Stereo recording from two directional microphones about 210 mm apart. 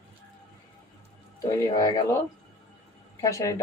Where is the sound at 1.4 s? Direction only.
20° left (ahead or behind).